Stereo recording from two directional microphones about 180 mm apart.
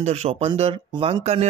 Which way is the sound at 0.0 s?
35° right (ahead or behind).